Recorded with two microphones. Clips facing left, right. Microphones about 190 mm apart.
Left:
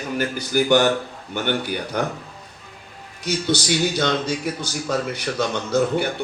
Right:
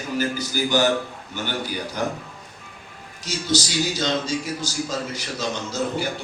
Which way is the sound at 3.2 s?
60° left (ahead or behind).